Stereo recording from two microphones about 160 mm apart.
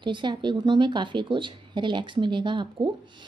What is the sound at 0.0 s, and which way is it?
A woman's voice, 30° right (ahead or behind).